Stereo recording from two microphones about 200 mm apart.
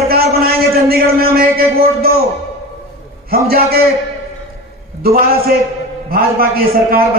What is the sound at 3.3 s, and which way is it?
Speech, 50° right (ahead or behind).